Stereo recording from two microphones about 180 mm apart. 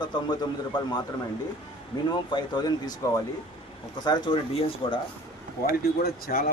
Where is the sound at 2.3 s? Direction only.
25° left (ahead or behind).